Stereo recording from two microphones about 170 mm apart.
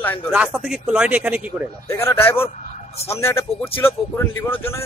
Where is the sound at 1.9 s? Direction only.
15° left (ahead or behind).